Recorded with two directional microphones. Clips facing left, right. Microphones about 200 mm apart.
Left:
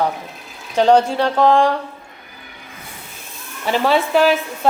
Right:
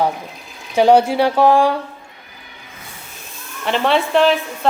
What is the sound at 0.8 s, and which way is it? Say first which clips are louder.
Speech: right 2 dB; 10° right (ahead or behind).